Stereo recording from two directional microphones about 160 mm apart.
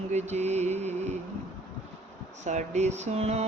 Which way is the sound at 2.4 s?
45° right (ahead or behind).